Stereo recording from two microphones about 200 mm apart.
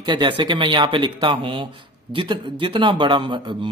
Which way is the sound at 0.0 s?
25° right (ahead or behind).